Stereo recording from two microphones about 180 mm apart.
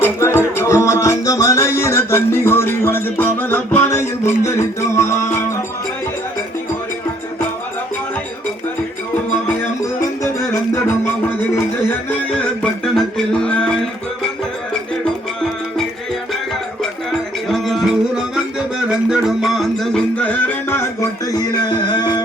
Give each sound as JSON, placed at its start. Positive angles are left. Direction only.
{"t": 0.0, "sound": "music", "side_deg": 15}
{"t": 12.6, "sound": "music", "side_deg": 5}
{"t": 16.8, "sound": "music", "side_deg": 0}